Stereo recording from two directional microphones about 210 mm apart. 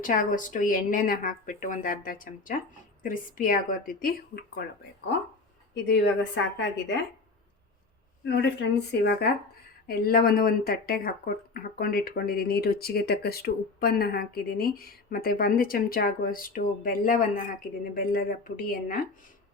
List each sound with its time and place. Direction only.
0.0 s speech: 40° left (ahead or behind)
5.7 s a woman's voice: 55° left (ahead or behind)
8.2 s a woman's voice: 55° left (ahead or behind)